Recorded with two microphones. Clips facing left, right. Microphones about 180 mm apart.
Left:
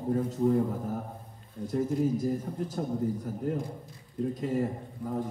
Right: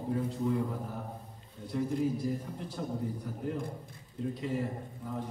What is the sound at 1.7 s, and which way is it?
A man's voice, 45° left (ahead or behind).